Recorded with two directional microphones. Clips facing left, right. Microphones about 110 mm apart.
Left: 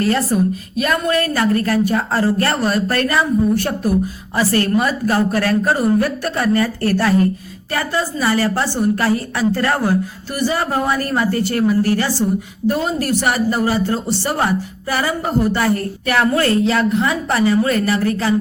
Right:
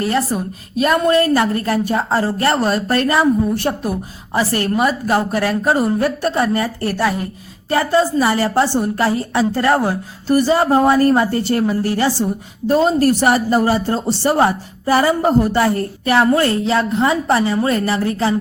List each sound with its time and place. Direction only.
0.0 s a woman's voice: 15° right (ahead or behind)
0.8 s speech: 30° right (ahead or behind); by 7.2 s 15° right (ahead or behind)
7.7 s speech: 25° right (ahead or behind)